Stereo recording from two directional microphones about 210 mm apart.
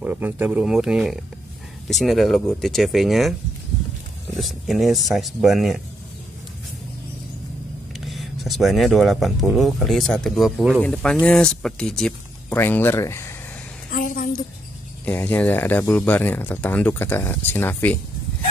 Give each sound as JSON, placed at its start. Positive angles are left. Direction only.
{"t": 0.0, "sound": "speech", "side_deg": -10}
{"t": 4.4, "sound": "speech", "side_deg": 0}
{"t": 8.1, "sound": "speech", "side_deg": 0}
{"t": 13.8, "sound": "a sound", "side_deg": 40}
{"t": 15.0, "sound": "speech", "side_deg": 5}